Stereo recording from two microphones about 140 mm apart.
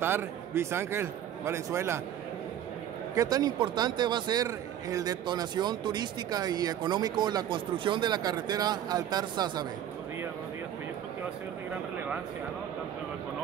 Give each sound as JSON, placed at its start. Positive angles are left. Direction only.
{"t": 0.0, "sound": "a man's voice", "side_deg": -15}
{"t": 3.2, "sound": "a man's voice", "side_deg": -25}